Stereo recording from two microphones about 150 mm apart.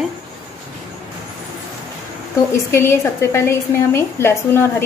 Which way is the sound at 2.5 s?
15° left (ahead or behind).